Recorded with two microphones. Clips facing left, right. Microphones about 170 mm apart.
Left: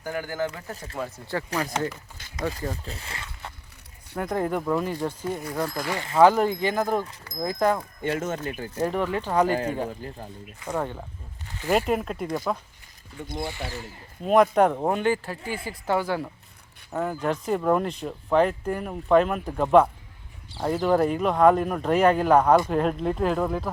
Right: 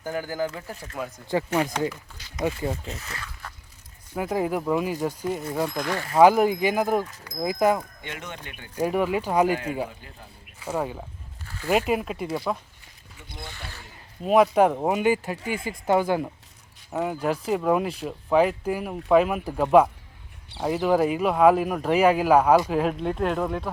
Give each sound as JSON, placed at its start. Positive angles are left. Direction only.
{"t": 0.0, "sound": "speech", "side_deg": -15}
{"t": 1.3, "sound": "speech", "side_deg": -20}
{"t": 2.8, "sound": "speech", "side_deg": 30}
{"t": 4.1, "sound": "speech", "side_deg": -5}
{"t": 6.1, "sound": "speech", "side_deg": -10}
{"t": 8.0, "sound": "speech", "side_deg": 40}
{"t": 8.7, "sound": "speech", "side_deg": -10}
{"t": 10.0, "sound": "speech", "side_deg": 40}
{"t": 10.6, "sound": "speech", "side_deg": -5}
{"t": 11.4, "sound": "a sound", "side_deg": 20}
{"t": 11.7, "sound": "speech", "side_deg": -5}
{"t": 13.2, "sound": "speech", "side_deg": 45}
{"t": 14.3, "sound": "speech", "side_deg": -5}